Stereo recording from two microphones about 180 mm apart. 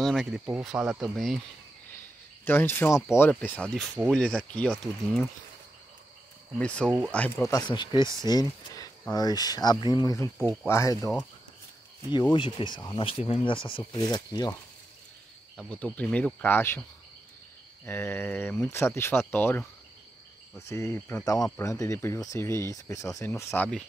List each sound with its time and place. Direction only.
0.0 s speech: centre (ahead or behind)
1.9 s speech: 10° left (ahead or behind)
6.6 s speech: 5° left (ahead or behind); by 8.0 s 25° left (ahead or behind)
8.0 s speech: 15° right (ahead or behind)
8.3 s speech: 20° left (ahead or behind)
12.1 s speech: 25° left (ahead or behind)
15.5 s speech: 5° left (ahead or behind)
17.8 s speech: 10° left (ahead or behind)